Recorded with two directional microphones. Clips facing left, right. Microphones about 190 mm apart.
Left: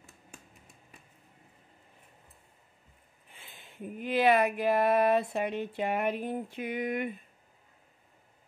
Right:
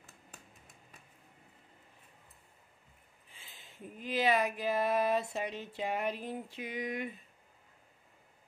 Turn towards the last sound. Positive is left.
turn(degrees=55)  # may be behind; listen again after turning